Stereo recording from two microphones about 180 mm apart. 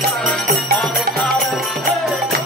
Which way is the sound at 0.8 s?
Centre (ahead or behind).